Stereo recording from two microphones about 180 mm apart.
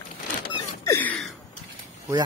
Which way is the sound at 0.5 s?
15° left (ahead or behind).